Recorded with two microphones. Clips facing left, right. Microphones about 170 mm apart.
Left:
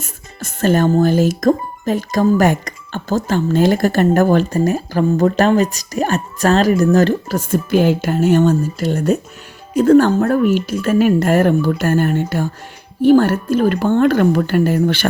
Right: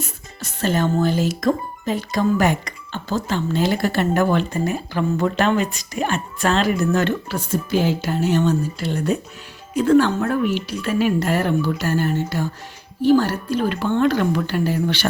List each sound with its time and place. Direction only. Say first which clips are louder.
0.0 s speech: left 1 dB; 50° left (ahead or behind)
7.5 s speech: left 5 dB; 55° left (ahead or behind)